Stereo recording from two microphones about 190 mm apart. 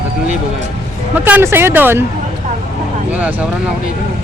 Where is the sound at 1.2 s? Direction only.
10° right (ahead or behind).